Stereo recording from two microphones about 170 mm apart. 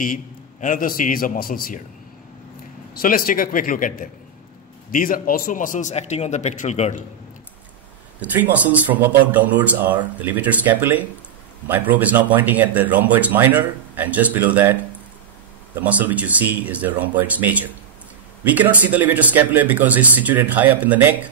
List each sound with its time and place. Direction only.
0.0 s a man's voice: 50° left (ahead or behind)
2.9 s speech: 55° left (ahead or behind)
4.9 s a man's voice: 55° left (ahead or behind)
8.2 s speech: 10° right (ahead or behind)
15.8 s speech: 10° right (ahead or behind)